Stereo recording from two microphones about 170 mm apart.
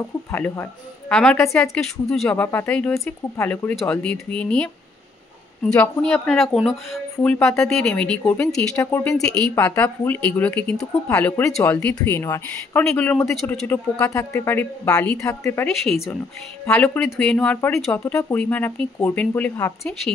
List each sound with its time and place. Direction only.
0.3 s speech: 10° left (ahead or behind)
2.2 s speech: 15° left (ahead or behind)
7.2 s a woman's voice: 10° left (ahead or behind)
15.6 s speech: centre (ahead or behind); by 19.9 s 15° left (ahead or behind)